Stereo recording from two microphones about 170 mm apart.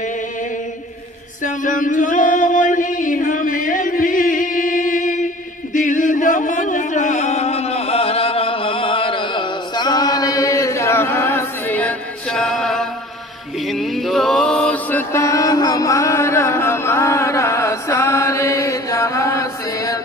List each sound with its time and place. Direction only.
1.4 s chant: 50° left (ahead or behind); by 12.8 s centre (ahead or behind)
13.7 s mantra: centre (ahead or behind); by 20.0 s 20° left (ahead or behind)